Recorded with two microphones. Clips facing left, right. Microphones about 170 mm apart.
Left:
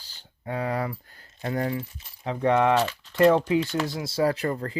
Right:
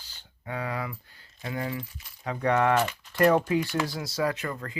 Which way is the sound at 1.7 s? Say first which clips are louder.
Left 4 dB; 25° left (ahead or behind).